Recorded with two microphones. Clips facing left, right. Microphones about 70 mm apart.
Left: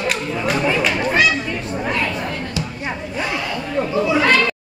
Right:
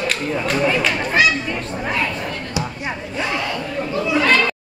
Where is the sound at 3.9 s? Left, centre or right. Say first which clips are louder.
Left 1 dB; centre.